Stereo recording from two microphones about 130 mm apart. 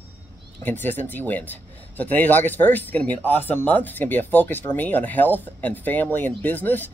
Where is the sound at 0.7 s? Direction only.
15° left (ahead or behind).